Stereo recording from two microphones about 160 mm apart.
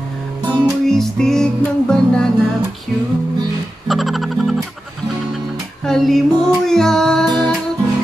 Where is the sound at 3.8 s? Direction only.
Centre (ahead or behind).